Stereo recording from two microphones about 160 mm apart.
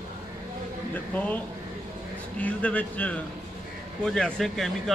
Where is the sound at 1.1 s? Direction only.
10° left (ahead or behind).